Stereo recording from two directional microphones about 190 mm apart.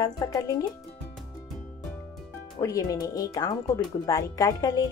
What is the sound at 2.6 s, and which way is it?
Speech, 15° left (ahead or behind).